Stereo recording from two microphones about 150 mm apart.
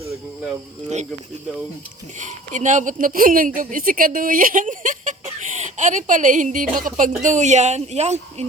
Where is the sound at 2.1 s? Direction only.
55° right (ahead or behind).